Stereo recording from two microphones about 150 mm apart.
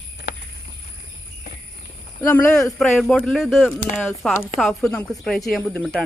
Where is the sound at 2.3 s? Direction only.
20° left (ahead or behind).